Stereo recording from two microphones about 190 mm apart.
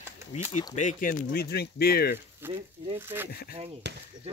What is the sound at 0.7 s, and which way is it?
Speech, 45° left (ahead or behind).